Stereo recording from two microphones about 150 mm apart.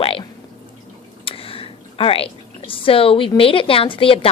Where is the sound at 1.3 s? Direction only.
40° left (ahead or behind).